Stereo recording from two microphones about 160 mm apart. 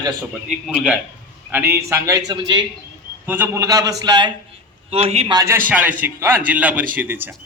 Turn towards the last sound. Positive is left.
turn(degrees=-10)  # may be behind; listen again after turning